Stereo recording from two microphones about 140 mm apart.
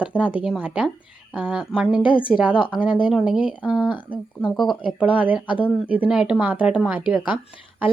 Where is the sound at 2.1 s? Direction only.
35° left (ahead or behind).